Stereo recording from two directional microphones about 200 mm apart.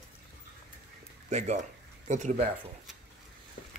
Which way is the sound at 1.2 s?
35° right (ahead or behind).